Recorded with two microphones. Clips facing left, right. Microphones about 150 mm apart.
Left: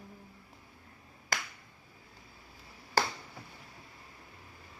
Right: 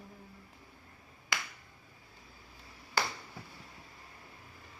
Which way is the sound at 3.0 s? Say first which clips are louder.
Left 4 dB; 40° left (ahead or behind).